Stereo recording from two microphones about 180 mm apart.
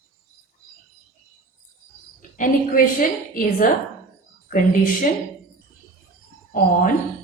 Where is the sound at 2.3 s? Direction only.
50° left (ahead or behind).